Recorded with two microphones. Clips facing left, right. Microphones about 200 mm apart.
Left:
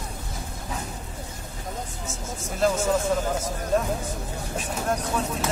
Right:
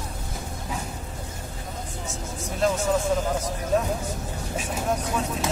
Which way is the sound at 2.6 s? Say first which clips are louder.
Left 1 dB; centre (ahead or behind).